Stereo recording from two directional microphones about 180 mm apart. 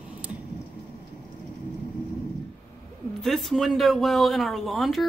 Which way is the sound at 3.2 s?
Centre (ahead or behind).